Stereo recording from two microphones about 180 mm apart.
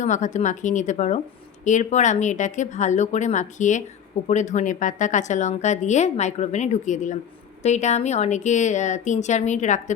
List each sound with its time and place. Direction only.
0.0 s a woman's voice: 40° left (ahead or behind)